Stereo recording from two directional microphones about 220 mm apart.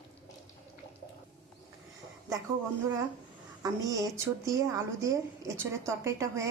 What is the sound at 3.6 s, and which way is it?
A woman's voice, 15° right (ahead or behind).